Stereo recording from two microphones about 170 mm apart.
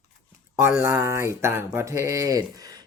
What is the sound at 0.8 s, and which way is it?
Speech, 15° right (ahead or behind).